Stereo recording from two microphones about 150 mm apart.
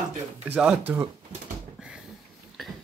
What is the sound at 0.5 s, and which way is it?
Speech, 10° right (ahead or behind).